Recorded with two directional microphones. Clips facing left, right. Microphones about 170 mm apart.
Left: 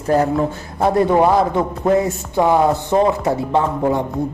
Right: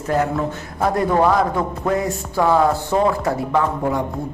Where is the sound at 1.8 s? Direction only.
25° left (ahead or behind).